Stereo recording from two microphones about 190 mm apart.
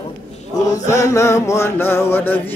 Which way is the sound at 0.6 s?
15° left (ahead or behind).